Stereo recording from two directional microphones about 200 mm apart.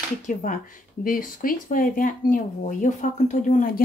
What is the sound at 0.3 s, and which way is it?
Speech, 40° left (ahead or behind).